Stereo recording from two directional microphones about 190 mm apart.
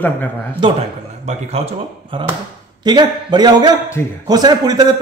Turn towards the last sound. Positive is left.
turn(degrees=-20)  # may be behind; listen again after turning